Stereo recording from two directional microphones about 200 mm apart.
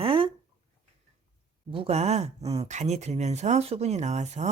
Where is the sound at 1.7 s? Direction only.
30° right (ahead or behind).